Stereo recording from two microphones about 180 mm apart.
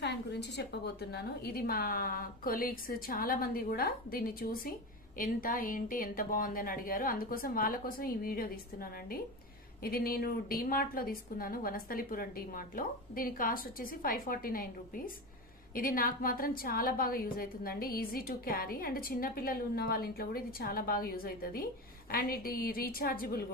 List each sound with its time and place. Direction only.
0.0 s a woman's voice: 70° left (ahead or behind)